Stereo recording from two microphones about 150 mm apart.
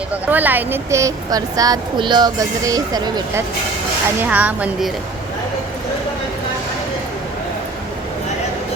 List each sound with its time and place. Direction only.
0.3 s a woman's voice: 10° right (ahead or behind)
4.2 s speech: 10° right (ahead or behind)